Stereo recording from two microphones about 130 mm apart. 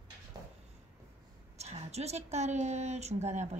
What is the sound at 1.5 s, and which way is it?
A woman's voice, 55° right (ahead or behind).